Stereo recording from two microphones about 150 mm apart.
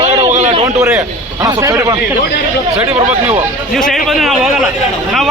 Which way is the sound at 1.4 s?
25° right (ahead or behind).